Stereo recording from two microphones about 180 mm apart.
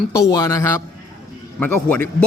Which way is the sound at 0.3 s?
20° left (ahead or behind).